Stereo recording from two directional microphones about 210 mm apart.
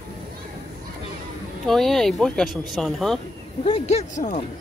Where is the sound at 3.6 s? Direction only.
35° left (ahead or behind).